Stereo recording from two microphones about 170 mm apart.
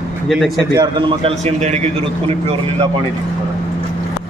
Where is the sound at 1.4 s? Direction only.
40° right (ahead or behind).